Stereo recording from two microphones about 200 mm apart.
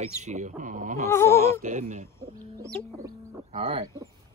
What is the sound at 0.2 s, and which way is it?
Speech, 35° right (ahead or behind).